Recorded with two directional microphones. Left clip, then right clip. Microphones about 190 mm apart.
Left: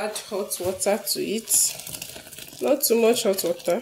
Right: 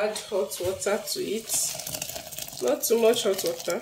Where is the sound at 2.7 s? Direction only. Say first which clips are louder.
Left 2 dB; 35° left (ahead or behind).